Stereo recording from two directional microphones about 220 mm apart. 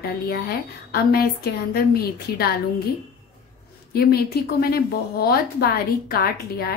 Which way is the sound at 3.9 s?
45° left (ahead or behind).